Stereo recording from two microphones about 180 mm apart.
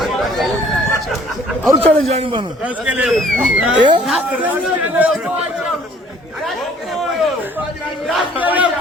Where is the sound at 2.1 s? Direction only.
35° right (ahead or behind).